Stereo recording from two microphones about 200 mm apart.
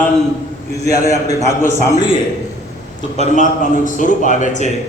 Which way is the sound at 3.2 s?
40° left (ahead or behind).